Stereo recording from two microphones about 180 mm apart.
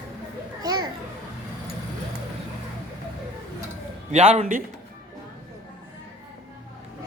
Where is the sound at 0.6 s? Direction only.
20° right (ahead or behind).